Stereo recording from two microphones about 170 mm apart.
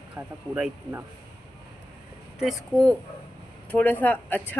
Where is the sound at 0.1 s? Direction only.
10° right (ahead or behind).